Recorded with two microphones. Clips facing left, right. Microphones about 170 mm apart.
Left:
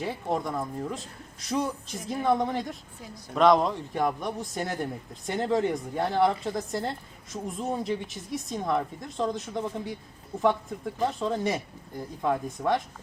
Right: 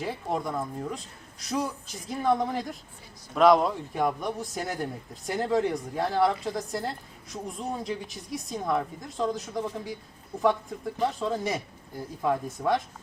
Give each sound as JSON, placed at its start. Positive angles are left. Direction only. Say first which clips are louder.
{"t": 0.0, "sound": "speech", "louder": "left 1 dB", "side_deg": 0}
{"t": 11.2, "sound": "speech", "louder": "left 1 dB", "side_deg": 0}